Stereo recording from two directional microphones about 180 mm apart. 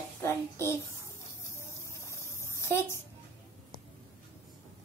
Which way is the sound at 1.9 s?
15° left (ahead or behind).